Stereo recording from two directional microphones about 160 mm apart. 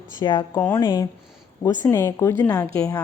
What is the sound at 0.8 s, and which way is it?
A woman's voice, 25° left (ahead or behind).